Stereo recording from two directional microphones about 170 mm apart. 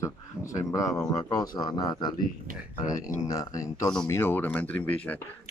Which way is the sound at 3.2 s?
20° left (ahead or behind).